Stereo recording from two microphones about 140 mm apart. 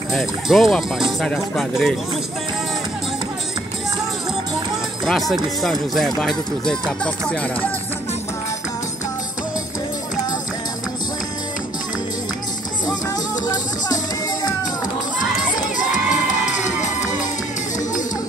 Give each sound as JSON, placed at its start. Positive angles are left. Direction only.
{"t": 0.1, "sound": "speech", "side_deg": 0}
{"t": 5.0, "sound": "speech", "side_deg": 0}
{"t": 15.1, "sound": "children shouting", "side_deg": 65}